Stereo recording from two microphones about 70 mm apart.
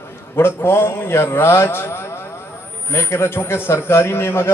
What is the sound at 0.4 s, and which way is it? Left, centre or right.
A man's voice, left.